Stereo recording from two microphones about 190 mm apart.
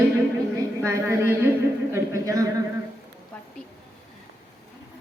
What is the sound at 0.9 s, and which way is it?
A man's voice, 10° right (ahead or behind).